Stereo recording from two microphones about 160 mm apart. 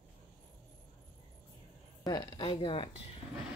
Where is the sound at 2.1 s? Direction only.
25° left (ahead or behind).